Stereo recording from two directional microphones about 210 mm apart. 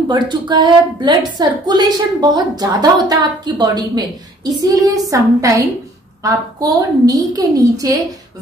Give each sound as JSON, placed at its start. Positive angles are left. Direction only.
{"t": 0.1, "sound": "a woman's voice", "side_deg": -20}